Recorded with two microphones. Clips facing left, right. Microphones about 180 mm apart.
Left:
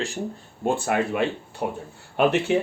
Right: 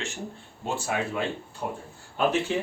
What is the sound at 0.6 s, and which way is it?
Speech, 55° left (ahead or behind).